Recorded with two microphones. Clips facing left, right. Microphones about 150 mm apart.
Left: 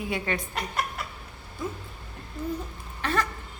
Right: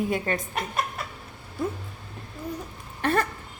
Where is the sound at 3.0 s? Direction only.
55° right (ahead or behind).